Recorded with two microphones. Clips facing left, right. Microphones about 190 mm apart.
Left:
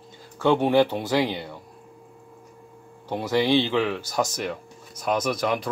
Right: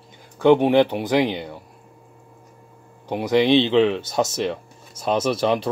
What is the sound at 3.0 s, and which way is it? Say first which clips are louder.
Speech: right 4 dB; 15° right (ahead or behind).